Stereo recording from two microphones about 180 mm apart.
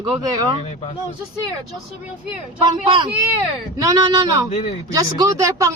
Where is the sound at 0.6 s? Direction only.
35° left (ahead or behind).